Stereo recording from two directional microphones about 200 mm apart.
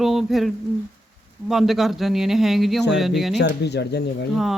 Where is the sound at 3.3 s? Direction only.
55° left (ahead or behind).